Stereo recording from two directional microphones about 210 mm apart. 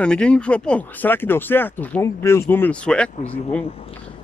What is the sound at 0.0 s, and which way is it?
Speech, 5° left (ahead or behind).